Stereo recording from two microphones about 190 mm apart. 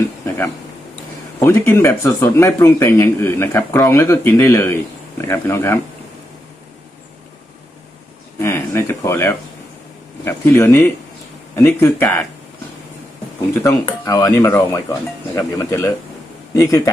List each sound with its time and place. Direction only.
1.4 s speech: 15° left (ahead or behind)
8.4 s a sound: 15° left (ahead or behind)
10.2 s speech: 15° left (ahead or behind)
13.5 s speech: 15° left (ahead or behind)